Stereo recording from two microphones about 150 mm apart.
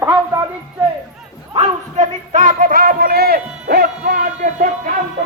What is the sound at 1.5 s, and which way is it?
Speech, 55° right (ahead or behind).